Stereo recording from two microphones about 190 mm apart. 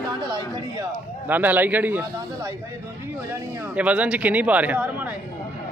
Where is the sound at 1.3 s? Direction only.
10° right (ahead or behind).